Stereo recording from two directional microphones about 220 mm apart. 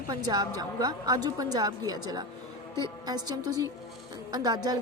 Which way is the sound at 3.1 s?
15° right (ahead or behind).